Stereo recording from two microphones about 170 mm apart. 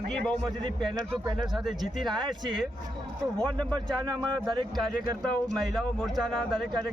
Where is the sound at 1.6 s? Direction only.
Centre (ahead or behind).